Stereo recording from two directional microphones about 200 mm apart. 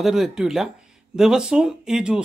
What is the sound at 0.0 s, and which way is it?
Speech, centre (ahead or behind).